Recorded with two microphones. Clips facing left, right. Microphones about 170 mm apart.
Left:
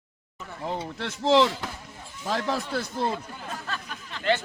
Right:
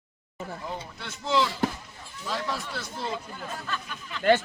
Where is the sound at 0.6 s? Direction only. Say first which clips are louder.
Left 5 dB; 90° left.